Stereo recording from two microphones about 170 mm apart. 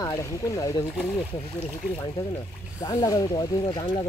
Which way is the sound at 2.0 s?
20° left (ahead or behind).